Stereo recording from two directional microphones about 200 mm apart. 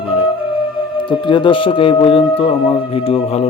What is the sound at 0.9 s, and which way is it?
Speech, 25° left (ahead or behind).